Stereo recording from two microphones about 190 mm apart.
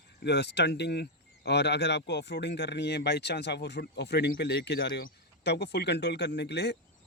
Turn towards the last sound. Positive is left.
turn(degrees=60)  # may be behind; listen again after turning